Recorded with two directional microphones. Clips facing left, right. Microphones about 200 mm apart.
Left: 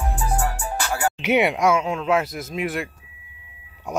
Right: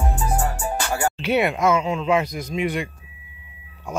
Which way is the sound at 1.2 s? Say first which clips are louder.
Left 2 dB; 15° left (ahead or behind).